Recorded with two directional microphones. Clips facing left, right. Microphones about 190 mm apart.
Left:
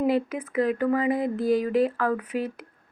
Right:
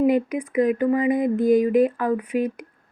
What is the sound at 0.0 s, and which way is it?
Speech, 15° right (ahead or behind).